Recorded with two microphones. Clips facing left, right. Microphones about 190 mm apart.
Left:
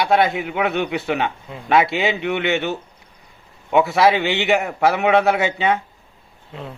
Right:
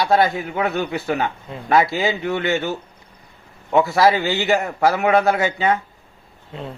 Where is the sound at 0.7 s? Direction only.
Centre (ahead or behind).